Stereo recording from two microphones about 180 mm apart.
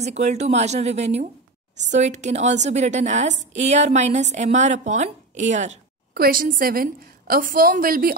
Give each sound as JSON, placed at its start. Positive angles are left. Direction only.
{"t": 0.0, "sound": "a woman's voice", "side_deg": -40}
{"t": 6.1, "sound": "a woman's voice", "side_deg": -55}